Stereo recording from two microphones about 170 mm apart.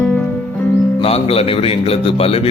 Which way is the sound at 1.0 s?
35° left (ahead or behind).